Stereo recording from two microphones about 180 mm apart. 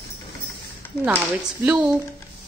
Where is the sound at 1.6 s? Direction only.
5° right (ahead or behind).